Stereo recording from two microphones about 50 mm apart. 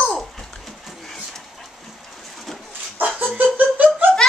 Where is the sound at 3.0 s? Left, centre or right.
Right.